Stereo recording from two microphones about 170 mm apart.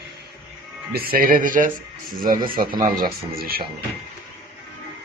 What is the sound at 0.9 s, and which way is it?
A man's voice, 60° right (ahead or behind).